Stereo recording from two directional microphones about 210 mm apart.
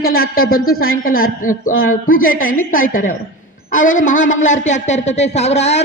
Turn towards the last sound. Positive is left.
turn(degrees=30)  # may be behind; listen again after turning